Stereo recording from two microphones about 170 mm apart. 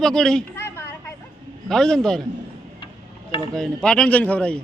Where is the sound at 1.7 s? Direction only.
5° left (ahead or behind).